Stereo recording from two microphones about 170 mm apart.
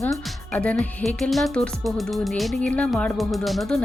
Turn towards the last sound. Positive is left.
turn(degrees=0)  # may be behind; listen again after turning